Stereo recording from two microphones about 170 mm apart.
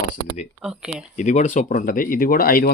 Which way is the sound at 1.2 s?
45° left (ahead or behind).